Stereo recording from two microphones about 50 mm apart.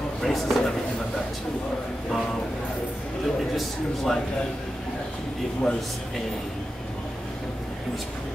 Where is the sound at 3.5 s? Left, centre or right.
Centre.